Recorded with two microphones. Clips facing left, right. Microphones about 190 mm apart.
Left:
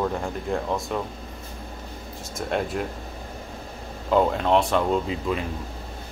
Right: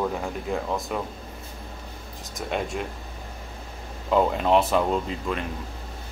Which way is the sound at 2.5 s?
Centre (ahead or behind).